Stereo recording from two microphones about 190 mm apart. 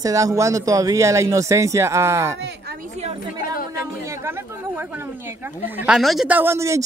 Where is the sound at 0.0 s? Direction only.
15° right (ahead or behind).